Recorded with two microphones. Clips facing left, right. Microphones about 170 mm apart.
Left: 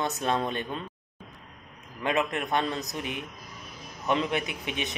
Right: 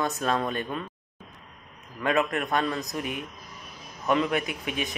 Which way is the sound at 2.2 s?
35° right (ahead or behind).